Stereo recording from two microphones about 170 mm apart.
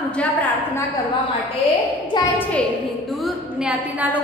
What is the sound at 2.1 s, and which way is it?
Speech, 25° left (ahead or behind).